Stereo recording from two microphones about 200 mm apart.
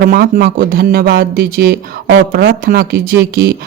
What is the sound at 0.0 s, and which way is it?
Speech, 45° right (ahead or behind).